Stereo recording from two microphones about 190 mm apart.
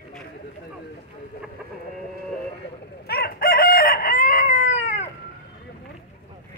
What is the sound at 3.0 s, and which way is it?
Crowing, 55° left (ahead or behind).